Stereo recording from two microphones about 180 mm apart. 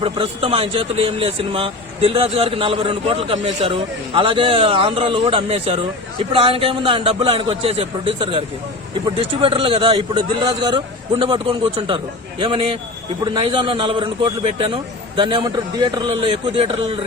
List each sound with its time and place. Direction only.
0.0 s a man's voice: 30° right (ahead or behind)